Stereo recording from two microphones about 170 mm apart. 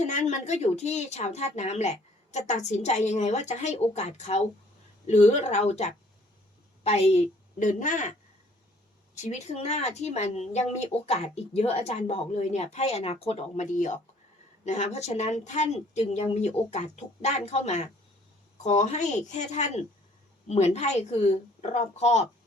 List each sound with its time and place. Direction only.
0.0 s speech: 45° left (ahead or behind)
9.1 s speech: 40° left (ahead or behind)